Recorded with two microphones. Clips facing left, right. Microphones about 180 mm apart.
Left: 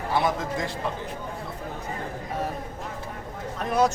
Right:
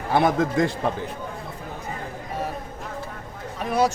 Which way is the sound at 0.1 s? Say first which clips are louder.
Right 6 dB; 55° right (ahead or behind).